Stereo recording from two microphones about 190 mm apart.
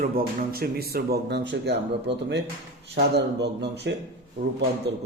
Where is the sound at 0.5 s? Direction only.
55° right (ahead or behind).